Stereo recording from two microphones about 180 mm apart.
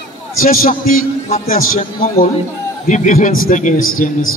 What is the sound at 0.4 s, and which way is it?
A man's voice, 50° left (ahead or behind).